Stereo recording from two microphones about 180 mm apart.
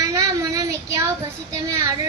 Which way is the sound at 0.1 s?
20° right (ahead or behind).